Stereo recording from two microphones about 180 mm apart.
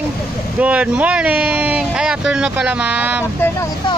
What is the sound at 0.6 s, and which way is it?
Speech, 5° right (ahead or behind).